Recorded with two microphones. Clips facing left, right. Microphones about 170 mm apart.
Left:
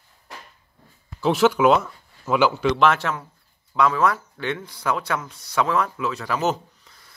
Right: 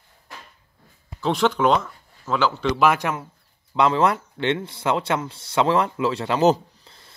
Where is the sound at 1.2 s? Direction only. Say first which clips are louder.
Left 3 dB; 10° left (ahead or behind).